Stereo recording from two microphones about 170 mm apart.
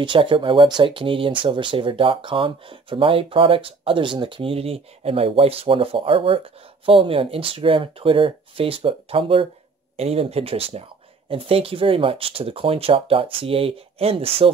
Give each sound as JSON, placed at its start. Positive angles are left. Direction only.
{"t": 0.0, "sound": "speech", "side_deg": -30}